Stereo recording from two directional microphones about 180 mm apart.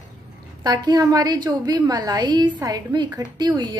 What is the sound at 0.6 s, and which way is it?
A woman's voice, 25° right (ahead or behind).